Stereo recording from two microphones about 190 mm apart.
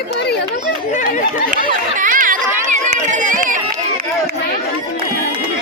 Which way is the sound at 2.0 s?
45° right (ahead or behind).